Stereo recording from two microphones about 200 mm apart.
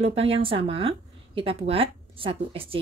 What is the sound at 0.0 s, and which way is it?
Speech, 30° right (ahead or behind).